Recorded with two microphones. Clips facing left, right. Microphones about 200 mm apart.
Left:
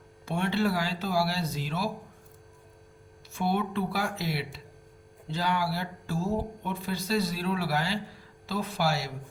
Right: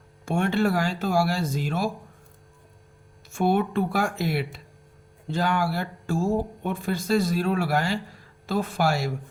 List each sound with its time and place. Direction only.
0.3 s speech: 50° right (ahead or behind)
3.3 s speech: 50° right (ahead or behind)